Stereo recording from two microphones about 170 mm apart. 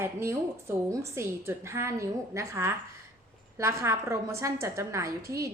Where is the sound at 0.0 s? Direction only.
15° right (ahead or behind).